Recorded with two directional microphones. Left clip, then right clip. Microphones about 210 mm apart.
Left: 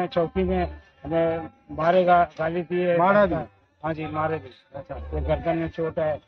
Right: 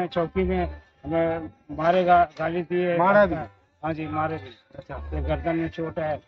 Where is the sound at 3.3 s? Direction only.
10° left (ahead or behind).